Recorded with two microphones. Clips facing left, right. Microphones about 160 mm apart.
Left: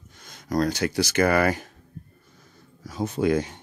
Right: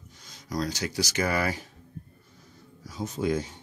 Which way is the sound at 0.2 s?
55° left (ahead or behind).